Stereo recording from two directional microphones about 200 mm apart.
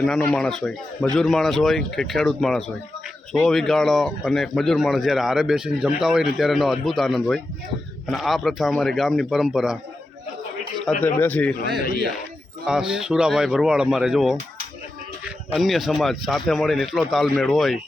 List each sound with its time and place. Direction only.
0.0 s speech: 5° left (ahead or behind)
10.8 s speech: 10° left (ahead or behind)
12.6 s speech: 5° right (ahead or behind)
15.5 s speech: centre (ahead or behind)